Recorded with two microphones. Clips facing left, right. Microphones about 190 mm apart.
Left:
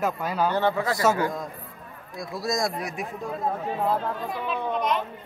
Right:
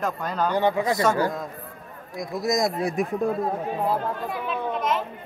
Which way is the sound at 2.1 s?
20° right (ahead or behind).